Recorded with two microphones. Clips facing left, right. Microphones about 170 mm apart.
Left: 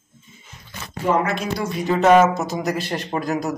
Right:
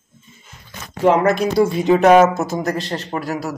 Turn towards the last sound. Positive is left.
turn(degrees=20)  # may be behind; listen again after turning